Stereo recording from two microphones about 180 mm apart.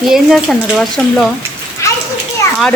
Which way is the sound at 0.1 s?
Centre (ahead or behind).